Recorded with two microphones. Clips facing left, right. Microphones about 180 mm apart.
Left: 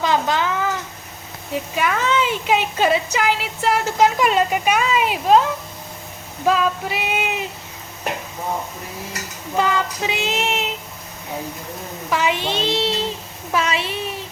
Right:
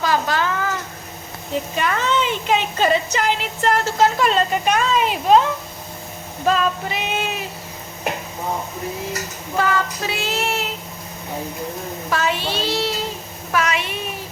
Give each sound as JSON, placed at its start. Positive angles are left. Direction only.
{"t": 0.0, "sound": "a sound", "side_deg": 20}
{"t": 1.7, "sound": "a woman's voice", "side_deg": 5}
{"t": 3.8, "sound": "speech", "side_deg": 15}
{"t": 6.4, "sound": "child singing", "side_deg": 10}
{"t": 9.6, "sound": "speech", "side_deg": 15}
{"t": 12.1, "sound": "a child's voice", "side_deg": 15}